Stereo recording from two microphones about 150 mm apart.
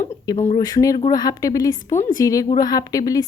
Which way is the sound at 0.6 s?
25° left (ahead or behind).